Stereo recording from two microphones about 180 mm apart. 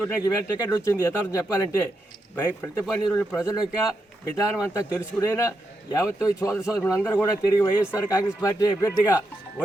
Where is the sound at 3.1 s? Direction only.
20° left (ahead or behind).